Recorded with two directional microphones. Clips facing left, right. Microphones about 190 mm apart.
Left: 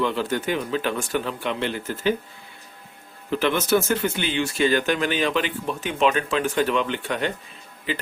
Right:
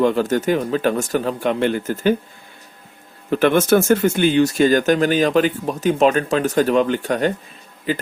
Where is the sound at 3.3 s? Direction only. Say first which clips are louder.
Right 6 dB; 50° right (ahead or behind).